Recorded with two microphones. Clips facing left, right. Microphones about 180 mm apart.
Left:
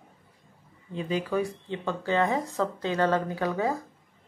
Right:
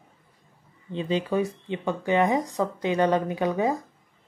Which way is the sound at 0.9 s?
25° right (ahead or behind).